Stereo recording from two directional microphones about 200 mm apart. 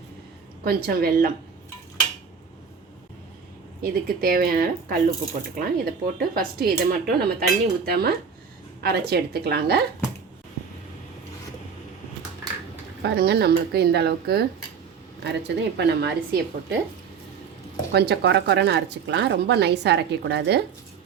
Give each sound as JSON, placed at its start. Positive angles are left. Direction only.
{"t": 0.6, "sound": "speech", "side_deg": -50}
{"t": 3.8, "sound": "speech", "side_deg": -45}
{"t": 13.0, "sound": "speech", "side_deg": -55}
{"t": 17.9, "sound": "speech", "side_deg": -55}